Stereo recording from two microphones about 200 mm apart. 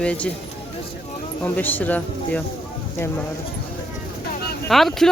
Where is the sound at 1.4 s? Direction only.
10° left (ahead or behind).